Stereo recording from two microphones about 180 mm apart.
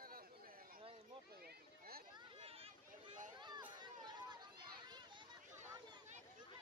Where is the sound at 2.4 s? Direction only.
30° right (ahead or behind).